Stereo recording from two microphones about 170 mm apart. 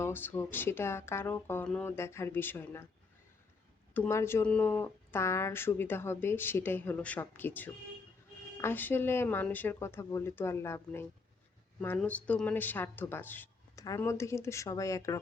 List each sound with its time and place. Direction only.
0.0 s speech: 10° left (ahead or behind)
3.9 s speech: 15° left (ahead or behind)